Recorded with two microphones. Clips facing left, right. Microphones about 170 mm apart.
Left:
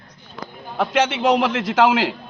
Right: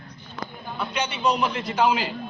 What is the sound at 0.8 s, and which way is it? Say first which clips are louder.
A man's voice: left 7 dB; 90° left.